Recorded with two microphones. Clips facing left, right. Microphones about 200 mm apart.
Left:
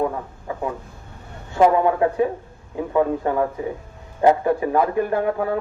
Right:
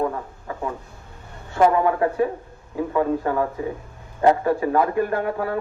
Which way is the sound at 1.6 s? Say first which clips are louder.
Left 2 dB; 20° left (ahead or behind).